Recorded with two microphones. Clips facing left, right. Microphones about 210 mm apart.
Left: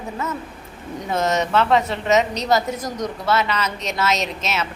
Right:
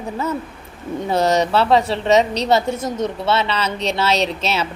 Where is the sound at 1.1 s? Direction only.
35° right (ahead or behind).